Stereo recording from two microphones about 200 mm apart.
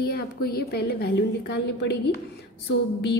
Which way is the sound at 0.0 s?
50° left (ahead or behind).